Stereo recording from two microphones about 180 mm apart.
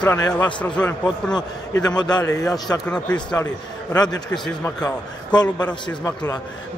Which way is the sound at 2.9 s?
5° left (ahead or behind).